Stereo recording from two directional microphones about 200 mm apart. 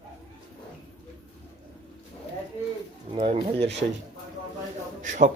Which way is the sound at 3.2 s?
25° right (ahead or behind).